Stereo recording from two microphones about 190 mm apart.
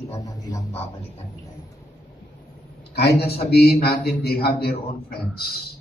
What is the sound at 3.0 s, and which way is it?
A man's voice, 60° left (ahead or behind).